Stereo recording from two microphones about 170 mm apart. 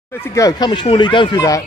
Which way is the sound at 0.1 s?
15° left (ahead or behind).